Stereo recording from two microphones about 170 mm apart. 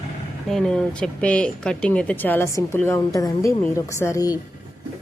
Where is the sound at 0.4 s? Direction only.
5° left (ahead or behind); by 4.4 s 20° left (ahead or behind).